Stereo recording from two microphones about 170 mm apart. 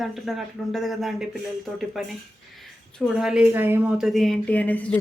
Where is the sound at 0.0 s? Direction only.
Centre (ahead or behind).